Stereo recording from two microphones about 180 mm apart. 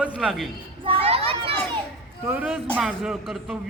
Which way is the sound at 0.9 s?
30° right (ahead or behind).